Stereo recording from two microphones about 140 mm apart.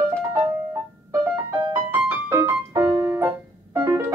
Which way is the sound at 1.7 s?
15° right (ahead or behind).